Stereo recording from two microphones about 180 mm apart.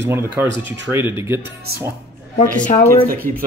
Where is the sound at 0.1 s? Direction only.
10° right (ahead or behind).